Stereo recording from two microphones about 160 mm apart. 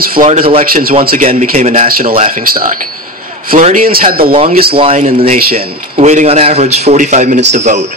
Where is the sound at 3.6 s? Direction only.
45° right (ahead or behind).